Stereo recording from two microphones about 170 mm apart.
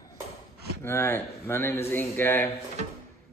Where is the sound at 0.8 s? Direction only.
15° left (ahead or behind).